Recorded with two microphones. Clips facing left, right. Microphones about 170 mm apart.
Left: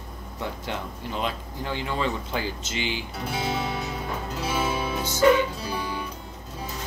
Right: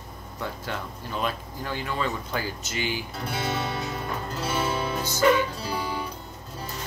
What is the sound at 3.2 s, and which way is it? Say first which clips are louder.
Speech: left 2 dB; centre (ahead or behind).